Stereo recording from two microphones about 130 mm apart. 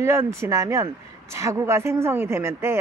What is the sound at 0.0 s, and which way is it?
Speech, 20° right (ahead or behind).